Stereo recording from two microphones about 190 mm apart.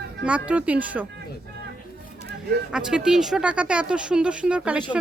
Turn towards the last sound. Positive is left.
turn(degrees=-5)  # may be behind; listen again after turning